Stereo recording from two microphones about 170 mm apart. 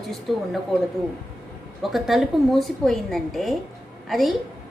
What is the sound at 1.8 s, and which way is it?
A woman's voice, centre (ahead or behind).